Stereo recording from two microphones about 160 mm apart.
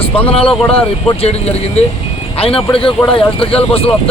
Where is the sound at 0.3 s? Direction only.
35° left (ahead or behind).